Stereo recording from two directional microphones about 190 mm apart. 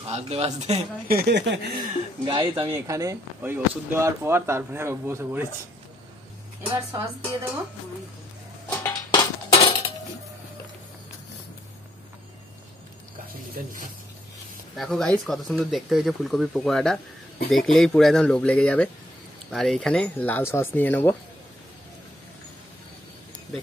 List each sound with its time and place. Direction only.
0.0 s speech: 35° right (ahead or behind)
1.0 s speech: 55° right (ahead or behind)
1.8 s speech: 25° right (ahead or behind)
2.7 s speech: 15° right (ahead or behind)
6.7 s speech: 15° right (ahead or behind)
8.6 s dishes: 10° left (ahead or behind)
9.5 s cutlery: 30° left (ahead or behind)
14.8 s speech: centre (ahead or behind)